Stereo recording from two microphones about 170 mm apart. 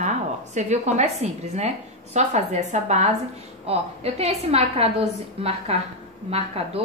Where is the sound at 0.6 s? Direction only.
45° right (ahead or behind).